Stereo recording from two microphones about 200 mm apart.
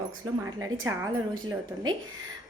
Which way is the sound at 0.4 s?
15° right (ahead or behind).